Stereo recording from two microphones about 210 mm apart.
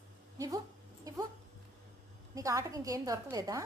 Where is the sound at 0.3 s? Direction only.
15° right (ahead or behind).